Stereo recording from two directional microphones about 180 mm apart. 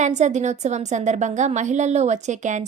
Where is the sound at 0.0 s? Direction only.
40° right (ahead or behind).